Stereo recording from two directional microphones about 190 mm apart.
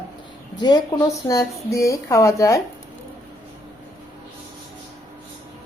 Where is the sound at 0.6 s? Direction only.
20° left (ahead or behind).